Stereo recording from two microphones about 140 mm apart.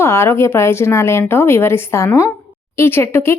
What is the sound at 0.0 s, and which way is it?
Speech, 20° left (ahead or behind).